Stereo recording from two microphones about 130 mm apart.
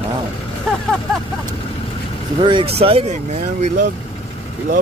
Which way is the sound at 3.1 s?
65° right (ahead or behind).